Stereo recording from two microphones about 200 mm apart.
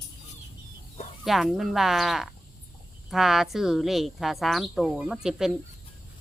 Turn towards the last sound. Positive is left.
turn(degrees=0)  # may be behind; listen again after turning